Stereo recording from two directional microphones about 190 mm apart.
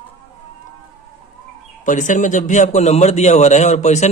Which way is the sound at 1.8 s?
40° left (ahead or behind).